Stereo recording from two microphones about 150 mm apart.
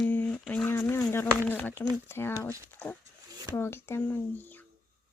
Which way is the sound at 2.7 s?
10° left (ahead or behind).